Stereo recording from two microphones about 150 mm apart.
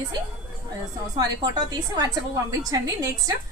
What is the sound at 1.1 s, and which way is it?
A woman's voice, 30° right (ahead or behind).